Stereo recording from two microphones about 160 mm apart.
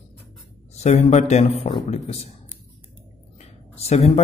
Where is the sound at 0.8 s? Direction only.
45° left (ahead or behind).